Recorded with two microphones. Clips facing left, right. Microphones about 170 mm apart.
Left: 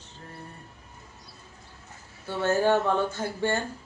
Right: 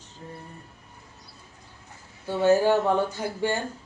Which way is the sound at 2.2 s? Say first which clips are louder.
Right 4 dB; 15° right (ahead or behind).